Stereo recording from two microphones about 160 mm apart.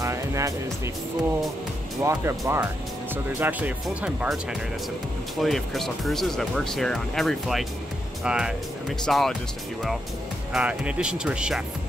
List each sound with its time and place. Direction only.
0.0 s music: 20° right (ahead or behind)
2.0 s speech: 20° right (ahead or behind)
5.4 s speech: centre (ahead or behind)
10.5 s speech: 5° right (ahead or behind)